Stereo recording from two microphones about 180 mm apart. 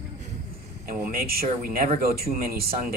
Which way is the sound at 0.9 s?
55° right (ahead or behind).